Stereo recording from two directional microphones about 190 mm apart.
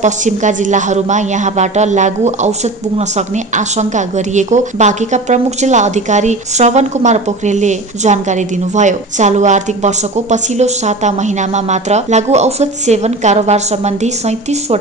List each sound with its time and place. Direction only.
0.0 s a woman's voice: 40° right (ahead or behind)